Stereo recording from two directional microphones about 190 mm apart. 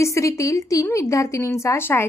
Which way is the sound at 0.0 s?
15° left (ahead or behind).